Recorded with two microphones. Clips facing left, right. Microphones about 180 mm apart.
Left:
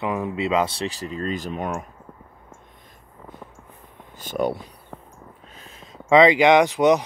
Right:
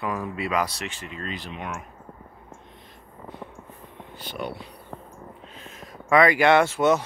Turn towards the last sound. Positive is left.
turn(degrees=15)  # may be behind; listen again after turning